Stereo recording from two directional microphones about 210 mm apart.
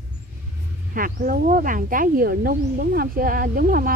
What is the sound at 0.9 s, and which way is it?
Speech, 40° right (ahead or behind).